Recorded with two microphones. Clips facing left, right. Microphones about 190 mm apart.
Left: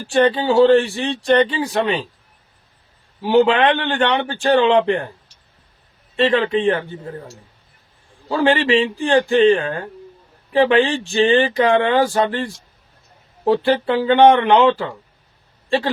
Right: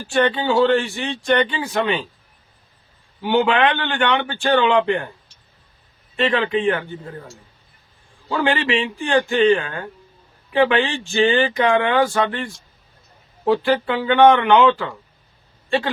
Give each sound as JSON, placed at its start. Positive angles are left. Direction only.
{"t": 0.1, "sound": "a man's voice", "side_deg": 30}
{"t": 3.2, "sound": "a man's voice", "side_deg": 35}
{"t": 6.1, "sound": "a man's voice", "side_deg": 30}
{"t": 8.3, "sound": "a man's voice", "side_deg": 35}